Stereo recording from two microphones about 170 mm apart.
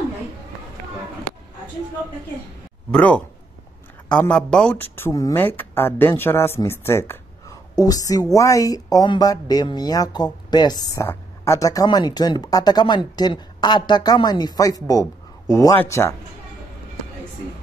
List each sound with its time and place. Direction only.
2.9 s speech: 5° left (ahead or behind)